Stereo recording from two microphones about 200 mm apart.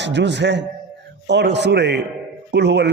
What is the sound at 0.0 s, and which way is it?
Mantra, 60° right (ahead or behind).